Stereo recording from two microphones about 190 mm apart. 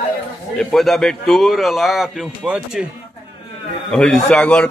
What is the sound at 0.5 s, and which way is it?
A man's voice, centre (ahead or behind).